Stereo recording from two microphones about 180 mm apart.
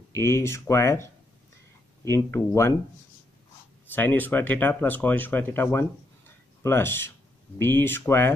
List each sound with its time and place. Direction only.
0.1 s speech: 15° left (ahead or behind)
3.9 s speech: 10° left (ahead or behind)